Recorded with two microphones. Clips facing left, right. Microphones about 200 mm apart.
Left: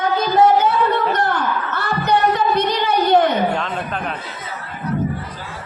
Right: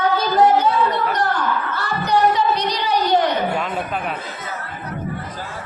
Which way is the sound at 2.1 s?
55° left (ahead or behind).